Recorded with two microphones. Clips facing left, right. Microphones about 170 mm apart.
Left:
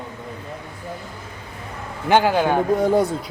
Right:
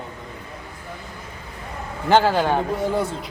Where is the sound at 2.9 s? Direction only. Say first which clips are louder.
Left 5 dB; 40° left (ahead or behind).